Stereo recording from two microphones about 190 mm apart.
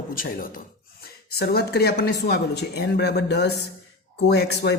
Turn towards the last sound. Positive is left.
turn(degrees=60)  # may be behind; listen again after turning